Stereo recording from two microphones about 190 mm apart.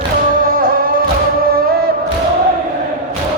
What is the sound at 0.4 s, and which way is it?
Music, 50° right (ahead or behind).